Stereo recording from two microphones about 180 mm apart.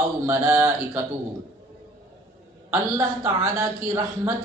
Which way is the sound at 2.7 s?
15° right (ahead or behind).